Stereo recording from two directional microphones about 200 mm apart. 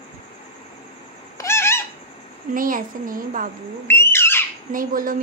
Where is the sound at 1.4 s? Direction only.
10° left (ahead or behind).